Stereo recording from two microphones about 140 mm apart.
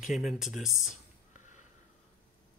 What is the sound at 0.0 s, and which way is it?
Speech, centre (ahead or behind).